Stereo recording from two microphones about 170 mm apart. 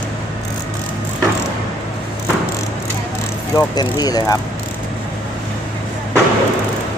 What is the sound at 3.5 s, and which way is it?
Speech, 20° left (ahead or behind).